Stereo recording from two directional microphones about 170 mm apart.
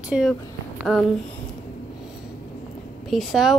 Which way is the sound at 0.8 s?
Centre (ahead or behind).